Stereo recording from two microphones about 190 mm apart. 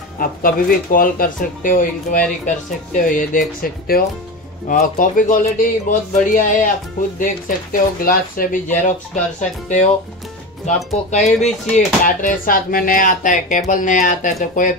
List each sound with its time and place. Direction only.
0.2 s speech: 50° left (ahead or behind)
10.9 s speech: 35° left (ahead or behind)